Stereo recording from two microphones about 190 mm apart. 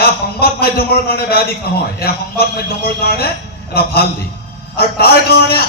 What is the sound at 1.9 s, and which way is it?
A man's voice, 55° left (ahead or behind).